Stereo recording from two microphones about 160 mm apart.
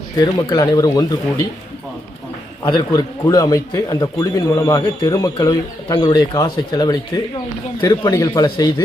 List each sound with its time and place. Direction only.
0.2 s a man's voice: 25° left (ahead or behind)
2.6 s a man's voice: 25° left (ahead or behind)